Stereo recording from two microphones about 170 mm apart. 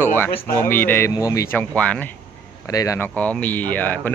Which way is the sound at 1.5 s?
10° left (ahead or behind).